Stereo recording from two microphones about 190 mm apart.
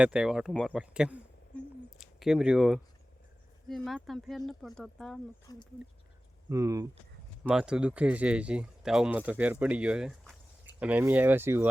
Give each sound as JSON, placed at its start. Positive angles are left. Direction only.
{"t": 0.0, "sound": "speech", "side_deg": -5}
{"t": 1.5, "sound": "a sound", "side_deg": 0}
{"t": 3.7, "sound": "speech", "side_deg": 0}
{"t": 5.5, "sound": "speech", "side_deg": 20}
{"t": 6.5, "sound": "speech", "side_deg": -15}
{"t": 7.4, "sound": "speech", "side_deg": -5}